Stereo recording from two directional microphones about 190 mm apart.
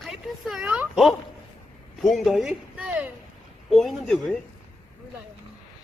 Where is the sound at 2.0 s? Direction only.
Centre (ahead or behind).